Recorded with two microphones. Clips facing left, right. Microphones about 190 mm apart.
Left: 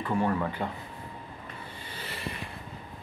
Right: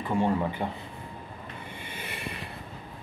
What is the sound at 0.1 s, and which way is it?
Speech, 20° right (ahead or behind).